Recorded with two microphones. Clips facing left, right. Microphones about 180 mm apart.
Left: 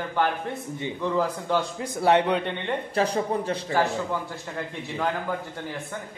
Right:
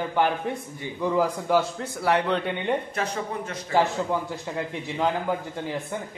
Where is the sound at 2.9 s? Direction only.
35° left (ahead or behind).